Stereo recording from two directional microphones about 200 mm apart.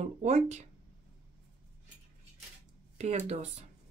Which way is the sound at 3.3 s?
35° right (ahead or behind).